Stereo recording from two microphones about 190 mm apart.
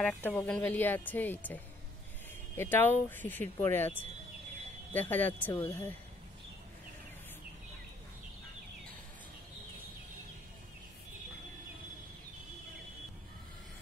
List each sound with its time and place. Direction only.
0.0 s speech: 5° left (ahead or behind)
4.9 s speech: 10° left (ahead or behind)